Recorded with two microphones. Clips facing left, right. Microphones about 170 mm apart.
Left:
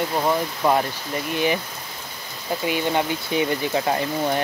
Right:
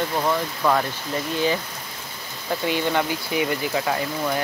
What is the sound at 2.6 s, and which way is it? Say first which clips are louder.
Speech: even; 20° left (ahead or behind).